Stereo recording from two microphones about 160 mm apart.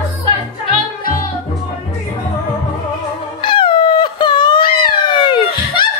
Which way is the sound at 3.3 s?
30° left (ahead or behind).